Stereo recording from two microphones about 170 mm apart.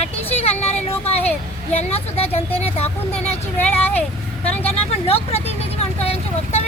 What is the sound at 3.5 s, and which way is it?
Speech, 10° left (ahead or behind).